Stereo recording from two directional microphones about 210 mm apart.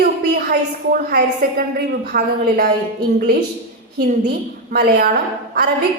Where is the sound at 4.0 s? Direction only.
45° right (ahead or behind).